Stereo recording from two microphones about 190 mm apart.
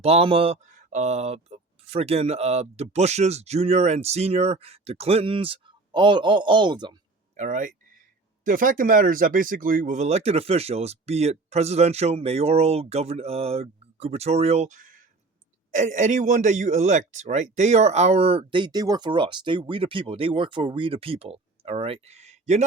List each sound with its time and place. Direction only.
0.0 s speech: 30° right (ahead or behind)
7.3 s speech: 45° right (ahead or behind)